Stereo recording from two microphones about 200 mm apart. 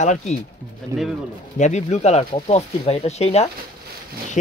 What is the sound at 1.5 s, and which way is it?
A man's voice, 35° left (ahead or behind).